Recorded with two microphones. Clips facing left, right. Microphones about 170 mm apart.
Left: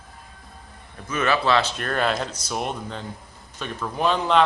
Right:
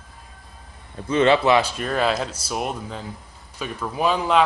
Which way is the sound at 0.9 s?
25° right (ahead or behind).